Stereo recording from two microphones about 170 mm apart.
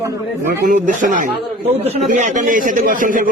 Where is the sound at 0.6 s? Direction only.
50° right (ahead or behind).